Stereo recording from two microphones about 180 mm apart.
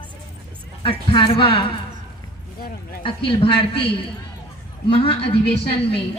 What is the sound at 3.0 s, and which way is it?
A man's voice, 30° left (ahead or behind).